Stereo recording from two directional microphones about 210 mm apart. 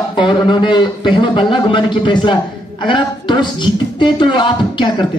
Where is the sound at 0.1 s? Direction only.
20° left (ahead or behind).